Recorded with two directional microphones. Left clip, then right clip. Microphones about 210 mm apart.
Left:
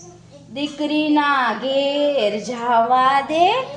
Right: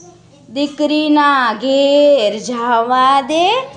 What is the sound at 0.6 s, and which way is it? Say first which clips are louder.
A child's voice: right 6 dB; 45° right (ahead or behind).